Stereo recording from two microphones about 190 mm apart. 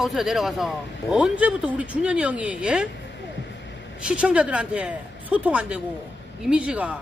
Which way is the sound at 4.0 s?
5° right (ahead or behind).